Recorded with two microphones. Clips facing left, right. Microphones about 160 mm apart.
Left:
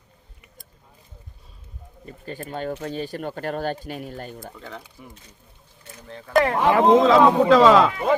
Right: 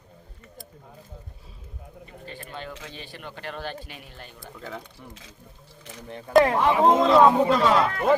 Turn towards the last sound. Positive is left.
turn(degrees=90)